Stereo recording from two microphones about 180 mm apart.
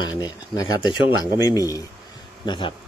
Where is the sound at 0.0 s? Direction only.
20° left (ahead or behind).